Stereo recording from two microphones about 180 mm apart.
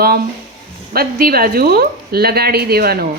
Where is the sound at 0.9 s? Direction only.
55° right (ahead or behind).